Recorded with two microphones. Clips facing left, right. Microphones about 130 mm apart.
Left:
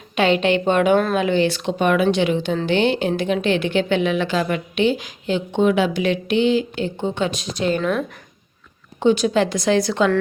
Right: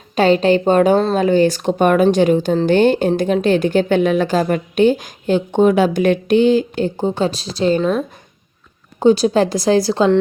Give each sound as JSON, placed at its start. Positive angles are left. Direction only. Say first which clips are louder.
{"t": 0.2, "sound": "a woman's voice", "louder": "right 4 dB", "side_deg": -40}
{"t": 9.0, "sound": "a woman's voice", "louder": "right 4 dB", "side_deg": -40}